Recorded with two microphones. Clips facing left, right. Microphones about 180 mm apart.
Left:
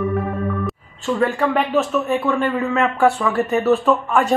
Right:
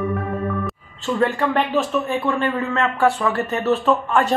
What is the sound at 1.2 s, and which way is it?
A man's voice, 5° left (ahead or behind).